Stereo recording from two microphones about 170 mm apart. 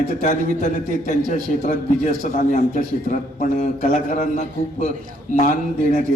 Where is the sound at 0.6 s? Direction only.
50° left (ahead or behind).